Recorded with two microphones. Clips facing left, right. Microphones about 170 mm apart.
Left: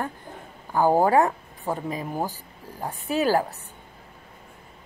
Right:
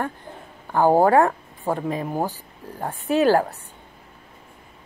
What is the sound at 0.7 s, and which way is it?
Speech, 50° right (ahead or behind).